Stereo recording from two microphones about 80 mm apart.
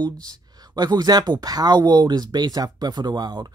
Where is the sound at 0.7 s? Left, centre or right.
Right.